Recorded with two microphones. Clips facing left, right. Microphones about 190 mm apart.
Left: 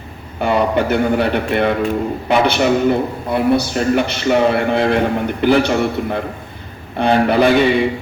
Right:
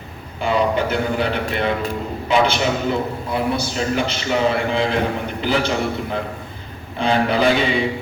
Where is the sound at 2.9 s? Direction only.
60° left (ahead or behind).